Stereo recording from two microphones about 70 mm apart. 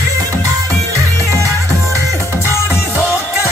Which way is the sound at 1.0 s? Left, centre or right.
Right.